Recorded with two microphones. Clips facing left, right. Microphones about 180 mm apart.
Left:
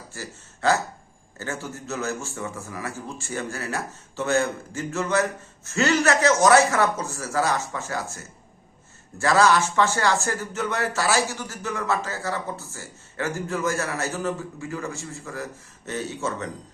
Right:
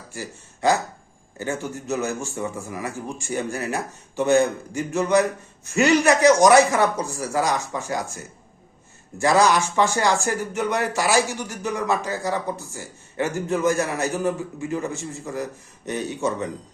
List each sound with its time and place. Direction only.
0.1 s speech: 15° right (ahead or behind)